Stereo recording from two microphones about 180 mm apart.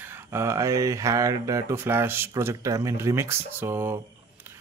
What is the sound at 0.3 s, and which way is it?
Speech, 15° right (ahead or behind).